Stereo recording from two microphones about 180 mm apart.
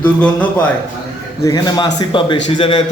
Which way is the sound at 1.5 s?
20° left (ahead or behind).